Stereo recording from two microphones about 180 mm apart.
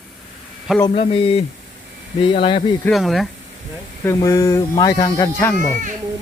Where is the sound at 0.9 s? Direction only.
30° left (ahead or behind).